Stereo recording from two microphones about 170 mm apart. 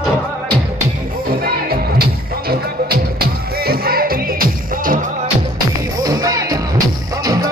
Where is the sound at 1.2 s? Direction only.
60° right (ahead or behind).